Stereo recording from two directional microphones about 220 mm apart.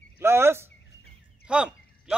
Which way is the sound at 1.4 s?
5° right (ahead or behind).